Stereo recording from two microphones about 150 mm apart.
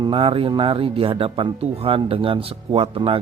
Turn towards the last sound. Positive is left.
turn(degrees=-35)  # may be behind; listen again after turning